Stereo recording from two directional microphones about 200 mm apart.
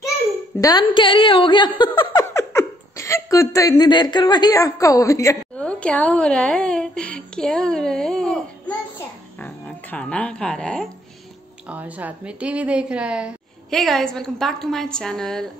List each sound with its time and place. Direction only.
0.6 s a woman's voice: 20° left (ahead or behind); by 10.9 s 5° left (ahead or behind)
11.7 s a woman's voice: 5° right (ahead or behind)